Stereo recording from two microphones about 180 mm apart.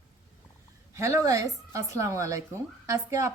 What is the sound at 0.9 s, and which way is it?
A woman's voice, 15° right (ahead or behind).